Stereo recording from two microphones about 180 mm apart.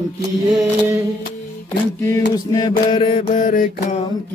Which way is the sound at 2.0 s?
20° left (ahead or behind).